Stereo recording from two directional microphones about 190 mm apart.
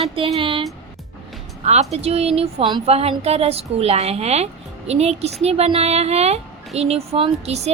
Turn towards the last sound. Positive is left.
turn(degrees=-35)  # may be behind; listen again after turning